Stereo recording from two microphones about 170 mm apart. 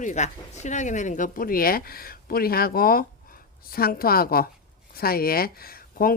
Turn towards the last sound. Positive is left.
turn(degrees=60)  # may be behind; listen again after turning